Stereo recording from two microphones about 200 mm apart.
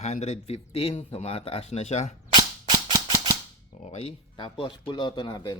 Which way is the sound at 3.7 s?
35° left (ahead or behind).